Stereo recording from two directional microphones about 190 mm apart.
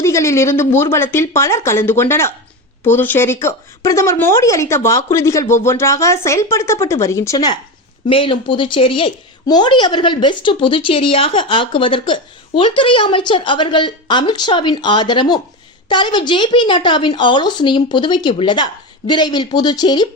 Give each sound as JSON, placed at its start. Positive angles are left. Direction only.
{"t": 0.0, "sound": "a woman's voice", "side_deg": 15}